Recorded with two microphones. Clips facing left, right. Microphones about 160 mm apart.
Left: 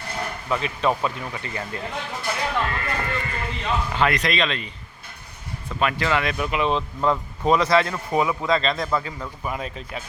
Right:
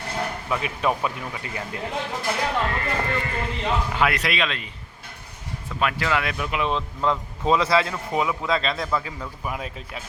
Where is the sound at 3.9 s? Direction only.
5° right (ahead or behind).